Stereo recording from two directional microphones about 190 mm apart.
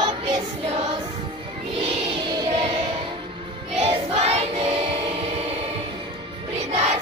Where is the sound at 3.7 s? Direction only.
30° right (ahead or behind).